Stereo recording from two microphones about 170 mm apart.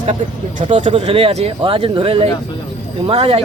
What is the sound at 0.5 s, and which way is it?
Speech, 30° right (ahead or behind).